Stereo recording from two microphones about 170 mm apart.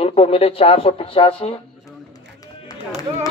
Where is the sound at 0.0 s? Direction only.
35° left (ahead or behind).